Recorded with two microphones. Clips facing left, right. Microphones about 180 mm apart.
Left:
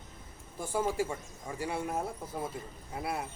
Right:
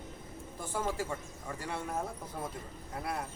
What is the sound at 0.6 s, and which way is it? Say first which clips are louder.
Speech: left 4 dB; 10° left (ahead or behind).